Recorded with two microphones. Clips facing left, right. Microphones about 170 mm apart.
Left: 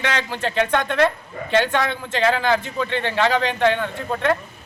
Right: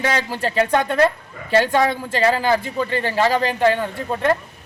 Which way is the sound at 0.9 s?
40° right (ahead or behind).